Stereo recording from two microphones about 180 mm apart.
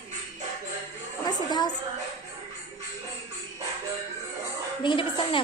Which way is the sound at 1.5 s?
25° left (ahead or behind).